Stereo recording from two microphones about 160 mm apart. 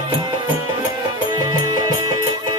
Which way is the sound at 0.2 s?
25° right (ahead or behind).